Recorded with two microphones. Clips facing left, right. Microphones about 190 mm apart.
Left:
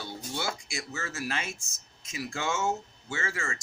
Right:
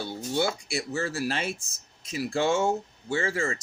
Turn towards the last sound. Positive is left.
turn(degrees=-35)  # may be behind; listen again after turning